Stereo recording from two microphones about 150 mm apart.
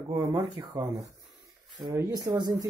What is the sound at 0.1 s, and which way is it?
Speech, 20° right (ahead or behind).